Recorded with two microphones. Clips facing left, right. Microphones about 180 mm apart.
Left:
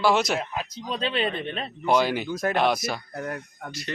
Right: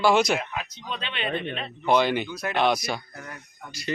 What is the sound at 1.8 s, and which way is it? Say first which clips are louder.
Speech: right 1 dB; 5° left (ahead or behind).